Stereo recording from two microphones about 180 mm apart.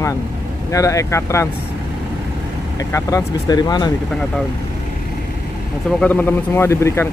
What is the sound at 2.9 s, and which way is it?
Speech, 20° left (ahead or behind).